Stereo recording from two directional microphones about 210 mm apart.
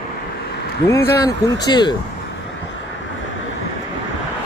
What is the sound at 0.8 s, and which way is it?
Speech, 15° left (ahead or behind).